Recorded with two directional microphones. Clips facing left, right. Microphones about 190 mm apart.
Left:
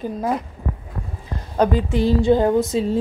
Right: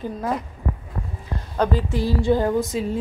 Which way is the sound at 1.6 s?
20° left (ahead or behind).